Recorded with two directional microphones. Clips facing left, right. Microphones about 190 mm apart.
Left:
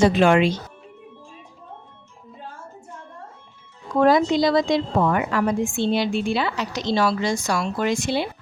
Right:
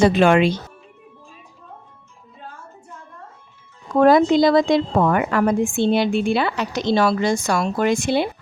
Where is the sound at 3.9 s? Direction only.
55° right (ahead or behind).